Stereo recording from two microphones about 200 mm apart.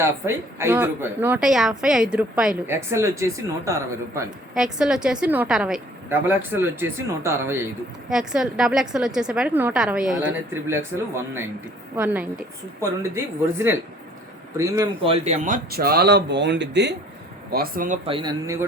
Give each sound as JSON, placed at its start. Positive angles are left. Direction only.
{"t": 0.0, "sound": "a woman's voice", "side_deg": -15}
{"t": 4.5, "sound": "a woman's voice", "side_deg": 0}
{"t": 17.5, "sound": "speech", "side_deg": -45}